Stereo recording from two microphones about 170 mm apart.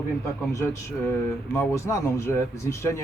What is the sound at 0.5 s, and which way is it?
Speech, 15° left (ahead or behind).